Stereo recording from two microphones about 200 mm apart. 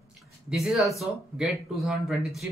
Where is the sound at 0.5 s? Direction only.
Centre (ahead or behind).